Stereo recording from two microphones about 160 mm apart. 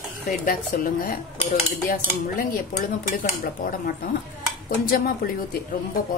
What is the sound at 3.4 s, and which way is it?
Speech, 65° left (ahead or behind).